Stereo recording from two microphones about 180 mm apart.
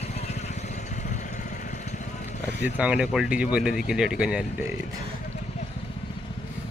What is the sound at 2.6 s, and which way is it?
Speech, 10° right (ahead or behind).